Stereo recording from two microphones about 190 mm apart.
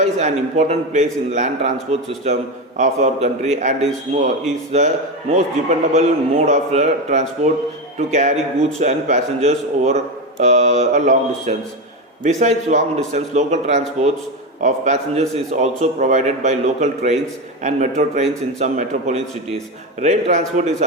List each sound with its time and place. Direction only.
0.0 s a man's voice: 40° right (ahead or behind)